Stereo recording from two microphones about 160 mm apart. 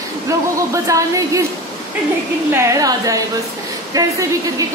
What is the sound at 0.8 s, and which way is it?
Speech, 20° right (ahead or behind).